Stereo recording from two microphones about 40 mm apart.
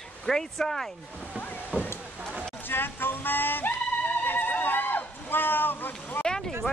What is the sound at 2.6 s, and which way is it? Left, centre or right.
Music, left.